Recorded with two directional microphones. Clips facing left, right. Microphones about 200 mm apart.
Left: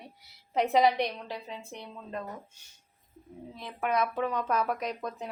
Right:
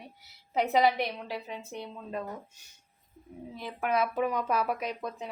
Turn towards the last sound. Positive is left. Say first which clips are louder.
# even
turn(degrees=-5)  # may be behind; listen again after turning